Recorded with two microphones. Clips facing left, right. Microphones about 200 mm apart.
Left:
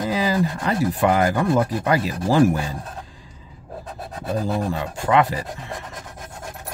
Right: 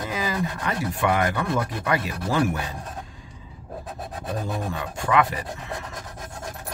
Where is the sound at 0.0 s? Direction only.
30° left (ahead or behind).